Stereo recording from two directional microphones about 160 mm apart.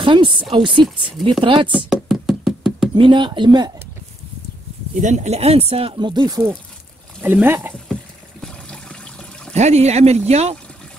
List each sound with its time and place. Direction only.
0.0 s speech: 30° right (ahead or behind)
1.9 s knock: centre (ahead or behind)
2.9 s speech: 30° right (ahead or behind)
5.0 s speech: 45° right (ahead or behind); by 6.5 s 25° right (ahead or behind)
7.2 s speech: 10° right (ahead or behind)
7.9 s water: 5° left (ahead or behind)
9.5 s speech: 45° right (ahead or behind)